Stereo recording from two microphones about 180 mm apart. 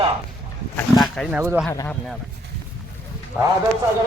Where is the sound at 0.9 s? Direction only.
Centre (ahead or behind).